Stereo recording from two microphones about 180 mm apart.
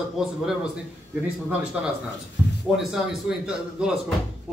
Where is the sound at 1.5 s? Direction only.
5° right (ahead or behind).